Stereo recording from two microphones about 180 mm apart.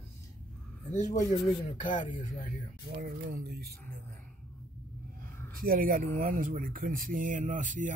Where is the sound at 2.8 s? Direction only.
60° right (ahead or behind).